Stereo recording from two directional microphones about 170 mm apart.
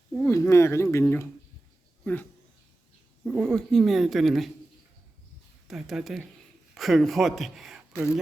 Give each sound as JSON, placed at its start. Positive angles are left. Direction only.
{"t": 0.2, "sound": "speech", "side_deg": 15}
{"t": 3.2, "sound": "speech", "side_deg": 0}
{"t": 5.6, "sound": "speech", "side_deg": -5}